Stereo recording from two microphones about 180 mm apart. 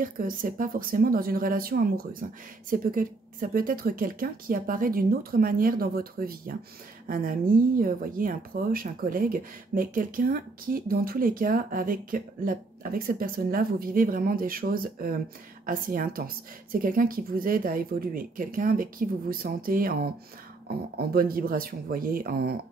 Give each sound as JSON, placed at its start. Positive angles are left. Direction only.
{"t": 0.0, "sound": "a woman's voice", "side_deg": -50}
{"t": 21.1, "sound": "speech", "side_deg": -55}